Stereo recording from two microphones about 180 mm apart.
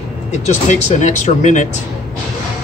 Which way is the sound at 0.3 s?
40° left (ahead or behind).